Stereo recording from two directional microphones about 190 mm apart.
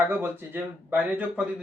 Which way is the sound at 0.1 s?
10° right (ahead or behind).